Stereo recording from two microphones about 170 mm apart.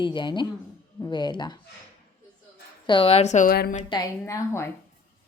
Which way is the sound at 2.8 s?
30° left (ahead or behind).